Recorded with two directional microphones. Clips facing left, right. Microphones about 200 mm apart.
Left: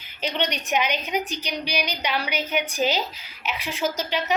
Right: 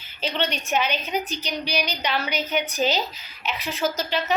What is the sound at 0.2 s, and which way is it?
A woman's voice, 15° left (ahead or behind).